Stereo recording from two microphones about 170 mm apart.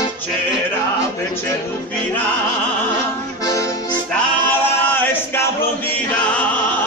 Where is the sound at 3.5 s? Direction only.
20° left (ahead or behind).